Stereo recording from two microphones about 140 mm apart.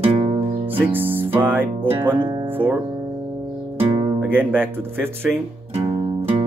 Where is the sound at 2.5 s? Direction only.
15° right (ahead or behind).